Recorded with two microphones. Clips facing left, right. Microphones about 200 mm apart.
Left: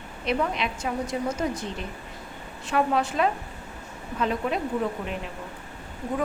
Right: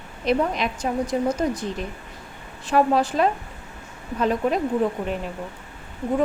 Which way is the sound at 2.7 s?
35° right (ahead or behind).